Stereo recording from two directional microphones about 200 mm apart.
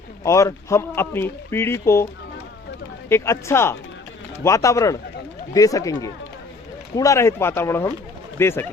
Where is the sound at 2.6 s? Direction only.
65° left (ahead or behind).